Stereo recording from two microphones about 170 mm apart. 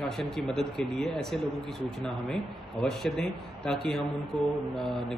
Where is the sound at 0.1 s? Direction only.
Centre (ahead or behind).